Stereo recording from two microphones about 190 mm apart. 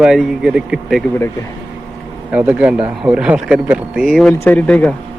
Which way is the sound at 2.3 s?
5° right (ahead or behind).